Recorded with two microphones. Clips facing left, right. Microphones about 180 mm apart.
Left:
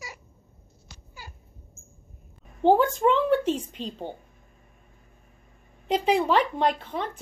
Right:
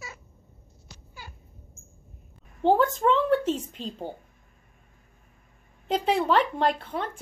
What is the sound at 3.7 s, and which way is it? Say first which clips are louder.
Speech: left 1 dB; 5° right (ahead or behind).